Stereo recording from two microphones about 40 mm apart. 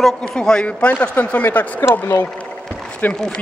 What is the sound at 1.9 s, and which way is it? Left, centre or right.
Speech, left.